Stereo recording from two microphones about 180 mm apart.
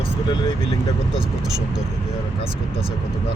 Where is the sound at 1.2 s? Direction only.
5° right (ahead or behind).